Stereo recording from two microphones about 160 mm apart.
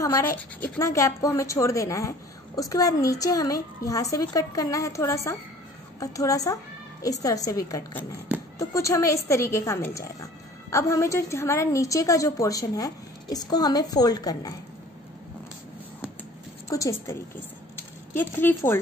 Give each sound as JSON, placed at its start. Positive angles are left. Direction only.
{"t": 0.0, "sound": "a woman's voice", "side_deg": 20}
{"t": 16.6, "sound": "a woman's voice", "side_deg": 20}